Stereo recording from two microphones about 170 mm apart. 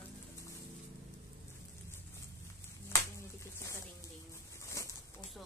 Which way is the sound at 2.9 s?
15° left (ahead or behind).